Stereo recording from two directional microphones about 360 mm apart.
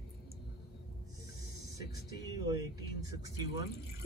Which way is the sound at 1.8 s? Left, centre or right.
Centre.